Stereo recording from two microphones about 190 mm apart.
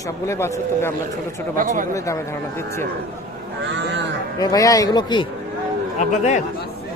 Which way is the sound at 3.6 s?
70° right (ahead or behind).